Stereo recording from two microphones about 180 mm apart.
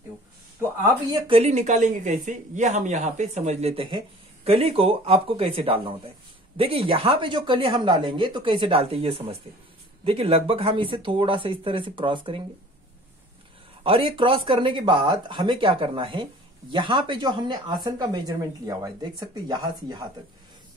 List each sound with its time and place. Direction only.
0.6 s a woman's voice: 20° right (ahead or behind)
13.8 s speech: 30° right (ahead or behind)